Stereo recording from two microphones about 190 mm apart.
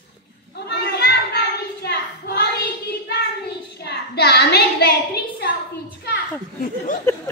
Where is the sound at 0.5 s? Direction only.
60° left (ahead or behind).